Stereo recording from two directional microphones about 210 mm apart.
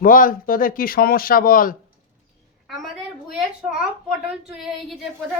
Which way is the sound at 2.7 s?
Centre (ahead or behind).